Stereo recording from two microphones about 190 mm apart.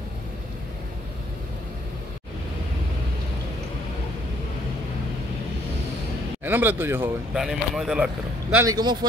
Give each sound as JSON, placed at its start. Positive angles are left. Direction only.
{"t": 6.4, "sound": "speech", "side_deg": -10}
{"t": 8.5, "sound": "speech", "side_deg": -20}